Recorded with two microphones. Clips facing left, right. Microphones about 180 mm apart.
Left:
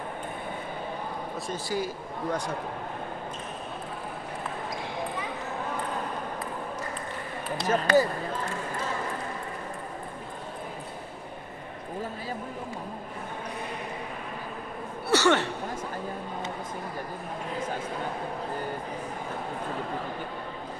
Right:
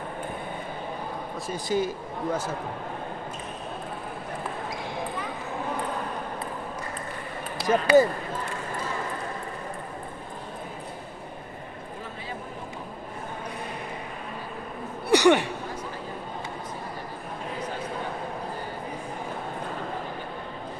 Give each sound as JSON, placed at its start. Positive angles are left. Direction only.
{"t": 1.7, "sound": "a man's voice", "side_deg": -20}
{"t": 7.5, "sound": "speech", "side_deg": -10}
{"t": 15.0, "sound": "speech", "side_deg": -15}